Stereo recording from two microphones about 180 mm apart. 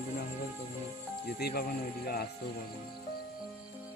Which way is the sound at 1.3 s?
55° left (ahead or behind).